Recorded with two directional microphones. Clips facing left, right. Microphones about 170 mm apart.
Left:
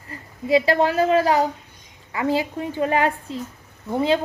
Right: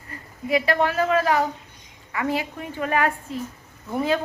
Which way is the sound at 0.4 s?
30° left (ahead or behind).